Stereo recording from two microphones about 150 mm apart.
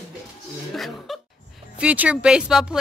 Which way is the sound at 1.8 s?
10° right (ahead or behind).